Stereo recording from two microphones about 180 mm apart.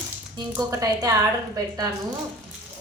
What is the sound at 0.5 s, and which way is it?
Speech, 20° right (ahead or behind).